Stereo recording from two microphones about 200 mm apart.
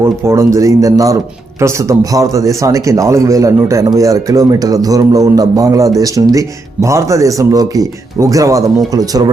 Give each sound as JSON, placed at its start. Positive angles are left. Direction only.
{"t": 0.0, "sound": "a man's voice", "side_deg": -15}